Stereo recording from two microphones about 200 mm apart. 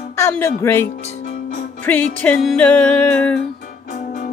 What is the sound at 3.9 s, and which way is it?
Music, 40° left (ahead or behind).